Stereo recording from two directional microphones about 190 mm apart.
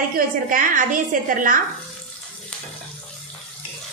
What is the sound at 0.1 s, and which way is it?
A woman's voice, 45° right (ahead or behind).